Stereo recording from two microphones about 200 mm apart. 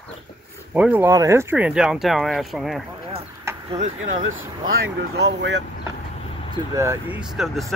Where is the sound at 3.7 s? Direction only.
35° right (ahead or behind).